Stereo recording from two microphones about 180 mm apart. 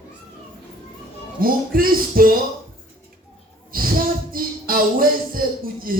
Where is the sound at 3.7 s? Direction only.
55° right (ahead or behind).